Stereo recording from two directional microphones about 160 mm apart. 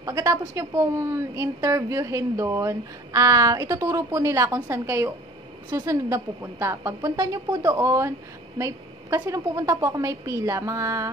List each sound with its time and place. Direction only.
0.0 s a woman's voice: 20° right (ahead or behind)